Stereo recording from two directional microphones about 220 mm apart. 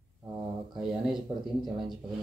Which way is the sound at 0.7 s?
Centre (ahead or behind).